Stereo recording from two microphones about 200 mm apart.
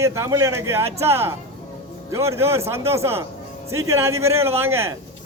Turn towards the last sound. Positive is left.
turn(degrees=-10)  # may be behind; listen again after turning